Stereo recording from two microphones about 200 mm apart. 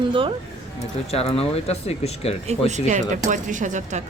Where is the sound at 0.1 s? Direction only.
25° right (ahead or behind).